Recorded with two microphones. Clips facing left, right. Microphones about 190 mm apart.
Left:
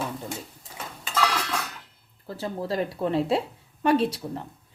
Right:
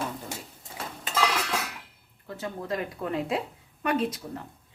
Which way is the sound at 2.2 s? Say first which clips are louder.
Left 4 dB; 30° left (ahead or behind).